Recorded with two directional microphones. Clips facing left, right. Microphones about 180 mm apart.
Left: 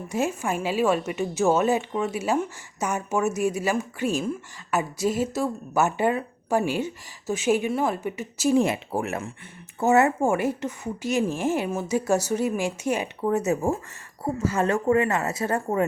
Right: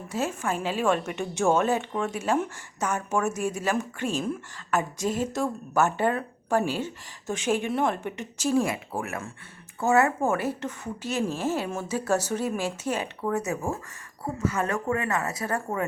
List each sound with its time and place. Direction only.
0.1 s a woman's voice: 10° left (ahead or behind)
8.5 s a woman's voice: 25° left (ahead or behind)
13.2 s a woman's voice: 25° left (ahead or behind)